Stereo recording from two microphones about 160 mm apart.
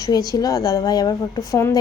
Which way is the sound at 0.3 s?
20° left (ahead or behind).